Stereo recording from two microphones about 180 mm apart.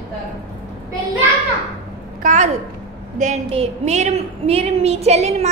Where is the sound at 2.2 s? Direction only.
40° right (ahead or behind).